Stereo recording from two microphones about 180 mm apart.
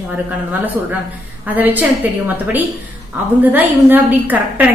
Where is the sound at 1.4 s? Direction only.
10° right (ahead or behind).